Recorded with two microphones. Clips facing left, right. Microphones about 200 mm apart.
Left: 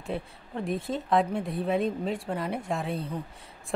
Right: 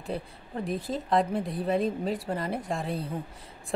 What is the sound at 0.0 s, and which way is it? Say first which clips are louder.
A woman's voice: even; centre (ahead or behind).